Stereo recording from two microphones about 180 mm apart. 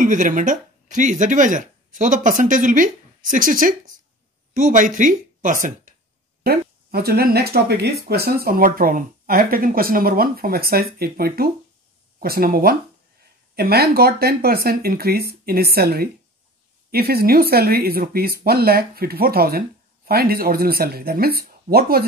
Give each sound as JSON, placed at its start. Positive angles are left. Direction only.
{"t": 0.0, "sound": "a woman's voice", "side_deg": -45}
{"t": 6.4, "sound": "speech", "side_deg": -60}